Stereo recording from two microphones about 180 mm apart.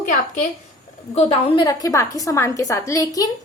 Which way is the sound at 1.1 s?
30° left (ahead or behind).